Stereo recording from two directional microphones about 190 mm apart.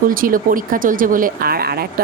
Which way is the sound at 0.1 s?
45° right (ahead or behind).